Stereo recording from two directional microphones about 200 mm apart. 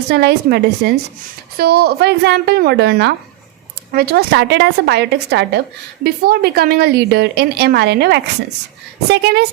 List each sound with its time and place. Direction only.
0.1 s a woman's voice: 55° right (ahead or behind)